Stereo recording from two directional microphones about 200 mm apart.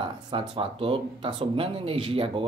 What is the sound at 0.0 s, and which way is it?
Speech, 25° right (ahead or behind).